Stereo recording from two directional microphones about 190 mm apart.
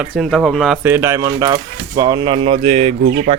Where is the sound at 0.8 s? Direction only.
15° right (ahead or behind); by 2.9 s 30° right (ahead or behind).